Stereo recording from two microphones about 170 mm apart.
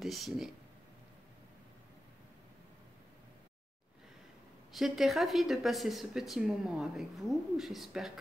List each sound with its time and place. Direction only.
0.0 s speech: centre (ahead or behind)
4.7 s speech: centre (ahead or behind)